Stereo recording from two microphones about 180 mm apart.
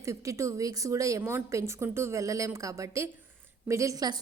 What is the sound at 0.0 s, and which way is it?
A woman's voice, 15° right (ahead or behind).